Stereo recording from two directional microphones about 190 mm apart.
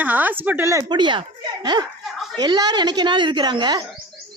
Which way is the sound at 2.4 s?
20° right (ahead or behind).